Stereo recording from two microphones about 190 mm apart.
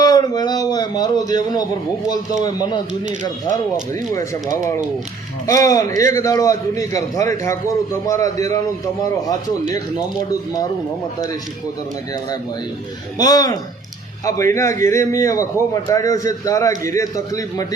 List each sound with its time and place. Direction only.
0.0 s a sound: 20° left (ahead or behind)
2.4 s speech: 20° left (ahead or behind)
4.1 s a man's voice: 15° left (ahead or behind)
13.1 s a man's voice: 20° left (ahead or behind)